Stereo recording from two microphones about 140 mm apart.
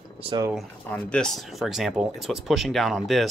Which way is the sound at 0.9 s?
5° left (ahead or behind).